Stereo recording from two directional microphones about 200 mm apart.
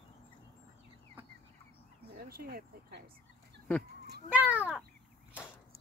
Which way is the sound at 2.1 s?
50° right (ahead or behind).